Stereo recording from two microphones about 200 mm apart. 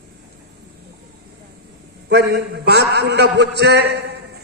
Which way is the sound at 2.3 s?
55° right (ahead or behind).